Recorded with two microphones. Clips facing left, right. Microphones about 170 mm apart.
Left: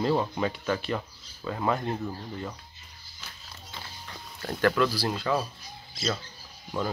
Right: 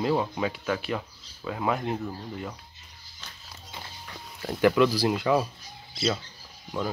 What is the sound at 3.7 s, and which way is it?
Speech, 10° right (ahead or behind).